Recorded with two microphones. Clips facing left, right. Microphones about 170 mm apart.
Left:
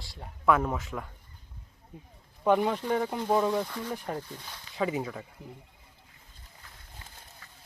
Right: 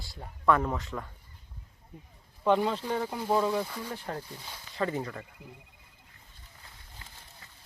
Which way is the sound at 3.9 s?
10° left (ahead or behind).